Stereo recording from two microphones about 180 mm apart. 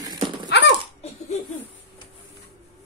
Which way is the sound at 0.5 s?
70° left (ahead or behind).